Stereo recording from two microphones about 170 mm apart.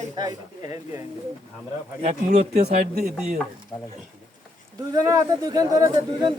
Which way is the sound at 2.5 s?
70° right (ahead or behind).